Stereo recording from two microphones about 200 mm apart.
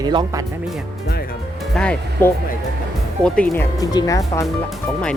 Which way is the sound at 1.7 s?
5° left (ahead or behind).